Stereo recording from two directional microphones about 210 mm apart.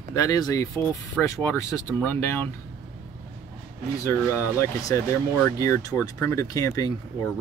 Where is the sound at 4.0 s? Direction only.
15° left (ahead or behind).